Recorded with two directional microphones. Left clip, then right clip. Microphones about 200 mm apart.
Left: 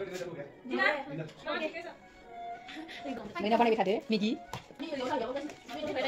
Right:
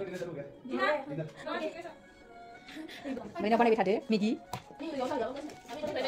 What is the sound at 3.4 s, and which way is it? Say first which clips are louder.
Speech: right 1 dB; 5° right (ahead or behind).